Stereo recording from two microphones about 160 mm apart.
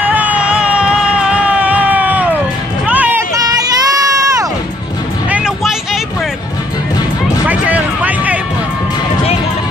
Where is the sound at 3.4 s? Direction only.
20° right (ahead or behind).